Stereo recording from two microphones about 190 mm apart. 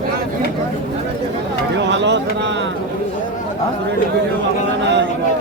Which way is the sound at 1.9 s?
70° right (ahead or behind).